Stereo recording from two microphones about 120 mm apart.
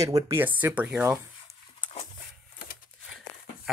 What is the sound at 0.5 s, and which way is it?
Speech, 15° right (ahead or behind).